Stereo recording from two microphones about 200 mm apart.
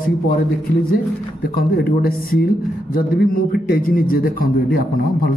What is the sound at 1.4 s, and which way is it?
A man's voice, 50° left (ahead or behind).